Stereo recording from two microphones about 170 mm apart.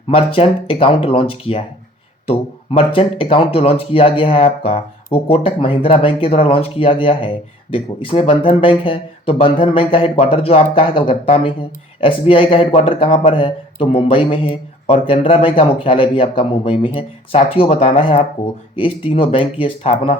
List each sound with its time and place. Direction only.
0.1 s speech: 35° left (ahead or behind)